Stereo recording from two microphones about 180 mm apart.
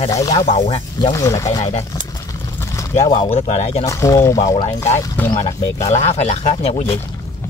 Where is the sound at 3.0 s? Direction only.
25° left (ahead or behind).